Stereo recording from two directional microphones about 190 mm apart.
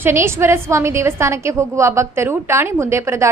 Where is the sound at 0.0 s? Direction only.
15° right (ahead or behind).